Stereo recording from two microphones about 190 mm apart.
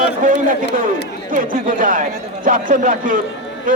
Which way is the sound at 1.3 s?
45° right (ahead or behind).